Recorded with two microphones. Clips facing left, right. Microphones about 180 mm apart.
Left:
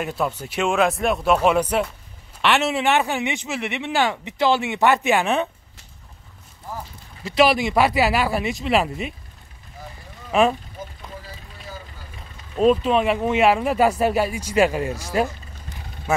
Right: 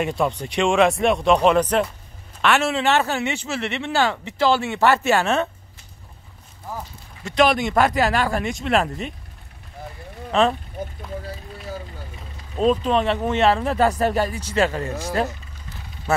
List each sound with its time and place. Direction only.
0.0 s speech: centre (ahead or behind)
7.2 s speech: 5° left (ahead or behind)
10.3 s speech: 10° left (ahead or behind)
12.5 s speech: 5° left (ahead or behind)